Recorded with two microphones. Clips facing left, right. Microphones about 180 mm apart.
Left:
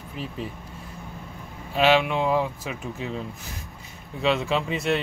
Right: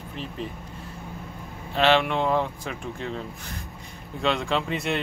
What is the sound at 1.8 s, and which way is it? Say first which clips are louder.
Speech: left 1 dB; 5° left (ahead or behind).